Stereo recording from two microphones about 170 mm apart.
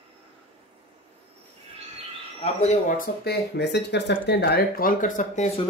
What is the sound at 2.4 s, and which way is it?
Speech, 40° left (ahead or behind).